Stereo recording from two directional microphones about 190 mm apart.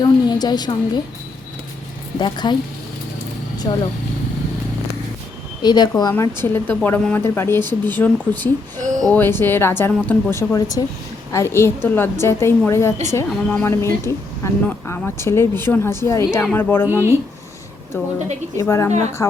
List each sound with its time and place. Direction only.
0.0 s a woman's voice: 20° left (ahead or behind)
2.1 s speech: 25° left (ahead or behind)
3.7 s speech: 20° left (ahead or behind)
5.6 s speech: 20° left (ahead or behind)
16.9 s speech: 15° right (ahead or behind)
17.9 s speech: 10° left (ahead or behind)